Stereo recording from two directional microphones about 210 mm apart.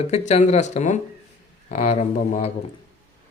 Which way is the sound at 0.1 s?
30° left (ahead or behind).